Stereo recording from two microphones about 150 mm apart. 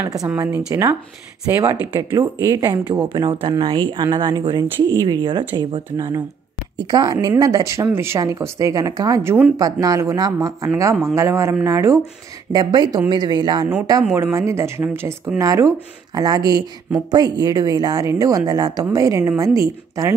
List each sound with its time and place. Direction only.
0.0 s a woman's voice: 25° right (ahead or behind)
0.3 s a woman's voice: 10° right (ahead or behind)